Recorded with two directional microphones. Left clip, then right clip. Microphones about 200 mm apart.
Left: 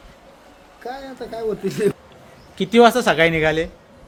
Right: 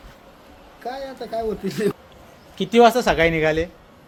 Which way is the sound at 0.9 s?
10° left (ahead or behind).